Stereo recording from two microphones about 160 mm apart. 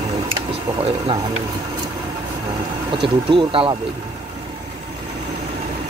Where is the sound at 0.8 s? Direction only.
35° right (ahead or behind).